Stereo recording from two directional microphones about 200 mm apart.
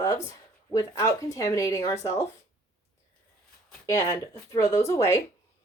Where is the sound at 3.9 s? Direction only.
15° left (ahead or behind).